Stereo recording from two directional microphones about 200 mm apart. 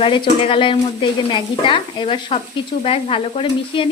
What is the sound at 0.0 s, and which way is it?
Sizzle, 25° left (ahead or behind).